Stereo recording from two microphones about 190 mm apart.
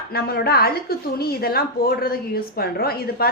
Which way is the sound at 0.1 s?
55° left (ahead or behind).